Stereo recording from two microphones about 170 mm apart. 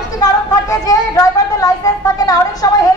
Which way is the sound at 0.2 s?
20° left (ahead or behind).